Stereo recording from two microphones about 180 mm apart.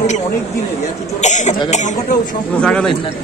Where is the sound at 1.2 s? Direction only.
40° left (ahead or behind).